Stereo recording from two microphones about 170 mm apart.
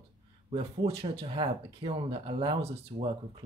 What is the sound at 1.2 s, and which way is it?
Speech, 30° right (ahead or behind).